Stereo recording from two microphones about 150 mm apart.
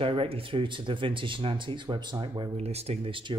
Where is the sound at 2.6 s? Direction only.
45° right (ahead or behind).